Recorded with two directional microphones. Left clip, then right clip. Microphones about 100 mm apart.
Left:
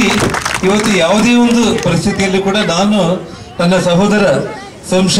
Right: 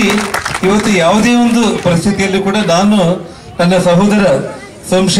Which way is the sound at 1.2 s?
40° right (ahead or behind).